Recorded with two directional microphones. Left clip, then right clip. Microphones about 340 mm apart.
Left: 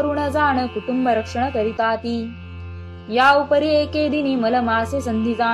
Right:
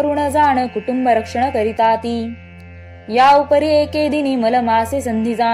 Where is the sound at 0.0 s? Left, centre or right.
Centre.